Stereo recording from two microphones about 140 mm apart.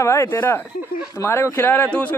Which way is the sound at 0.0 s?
20° left (ahead or behind).